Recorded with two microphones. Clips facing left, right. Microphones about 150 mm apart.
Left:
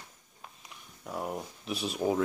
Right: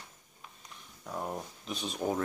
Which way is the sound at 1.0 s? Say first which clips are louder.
Left 2 dB; 5° left (ahead or behind).